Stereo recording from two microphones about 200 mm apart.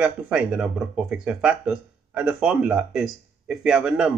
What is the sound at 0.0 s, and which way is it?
Speech, 5° right (ahead or behind).